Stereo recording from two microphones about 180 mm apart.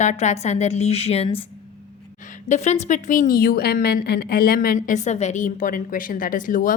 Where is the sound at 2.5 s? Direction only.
40° left (ahead or behind).